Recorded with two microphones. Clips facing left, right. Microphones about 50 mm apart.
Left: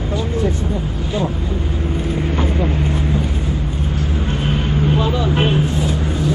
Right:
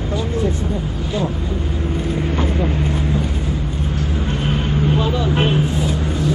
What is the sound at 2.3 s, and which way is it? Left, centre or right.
Vehicle, centre.